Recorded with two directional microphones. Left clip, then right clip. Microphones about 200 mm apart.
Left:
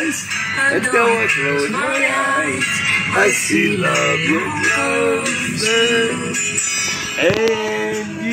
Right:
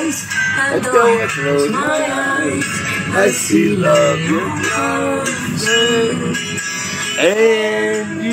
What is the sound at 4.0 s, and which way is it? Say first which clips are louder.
Music: right 2 dB; 20° left (ahead or behind).